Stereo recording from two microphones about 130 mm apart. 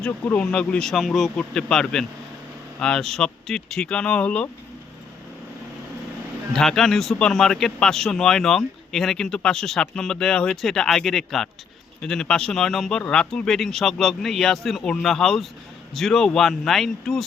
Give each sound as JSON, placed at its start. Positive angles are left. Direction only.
{"t": 0.0, "sound": "speech", "side_deg": 10}
{"t": 6.5, "sound": "speech", "side_deg": 5}